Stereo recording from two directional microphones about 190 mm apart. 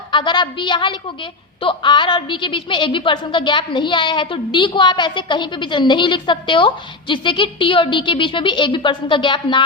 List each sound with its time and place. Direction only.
0.1 s a woman's voice: 25° left (ahead or behind)